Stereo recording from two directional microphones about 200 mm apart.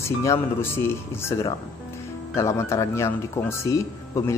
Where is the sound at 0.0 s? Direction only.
15° left (ahead or behind).